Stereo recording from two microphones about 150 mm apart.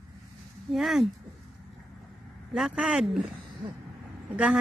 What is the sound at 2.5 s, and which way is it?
Speech, 5° right (ahead or behind).